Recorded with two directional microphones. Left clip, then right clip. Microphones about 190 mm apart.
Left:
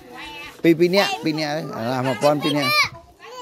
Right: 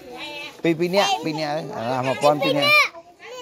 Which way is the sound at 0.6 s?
30° left (ahead or behind).